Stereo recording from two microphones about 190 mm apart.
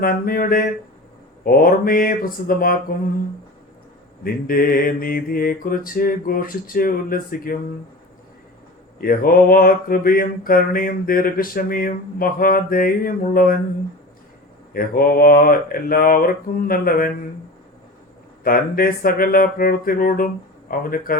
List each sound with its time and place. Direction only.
0.0 s mantra: 50° left (ahead or behind)
4.2 s mantra: 50° left (ahead or behind)
9.0 s mantra: 50° left (ahead or behind)
14.7 s mantra: 50° left (ahead or behind)
18.4 s mantra: 50° left (ahead or behind)